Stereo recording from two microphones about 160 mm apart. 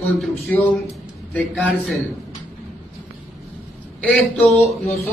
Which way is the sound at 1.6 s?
Centre (ahead or behind).